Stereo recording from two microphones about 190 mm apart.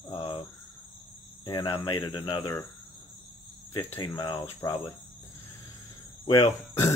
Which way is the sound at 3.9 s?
20° left (ahead or behind).